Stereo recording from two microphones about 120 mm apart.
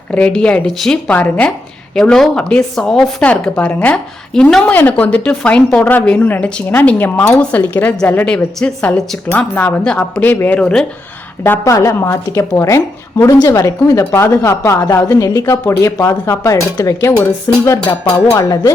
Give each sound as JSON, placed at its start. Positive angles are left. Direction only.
{"t": 0.1, "sound": "speech", "side_deg": 10}
{"t": 11.6, "sound": "a woman's voice", "side_deg": 25}
{"t": 18.3, "sound": "speech", "side_deg": 30}